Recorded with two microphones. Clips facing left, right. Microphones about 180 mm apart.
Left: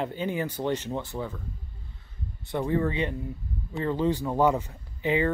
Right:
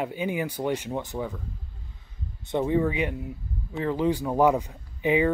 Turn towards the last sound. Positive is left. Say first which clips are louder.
# right 3 dB
turn(degrees=-15)  # may be behind; listen again after turning